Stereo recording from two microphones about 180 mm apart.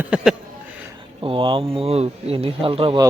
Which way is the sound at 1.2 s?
30° right (ahead or behind).